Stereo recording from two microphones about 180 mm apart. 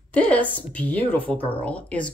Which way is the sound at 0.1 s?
10° left (ahead or behind).